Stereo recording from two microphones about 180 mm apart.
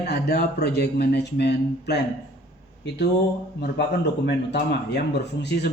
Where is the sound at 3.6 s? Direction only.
65° left (ahead or behind).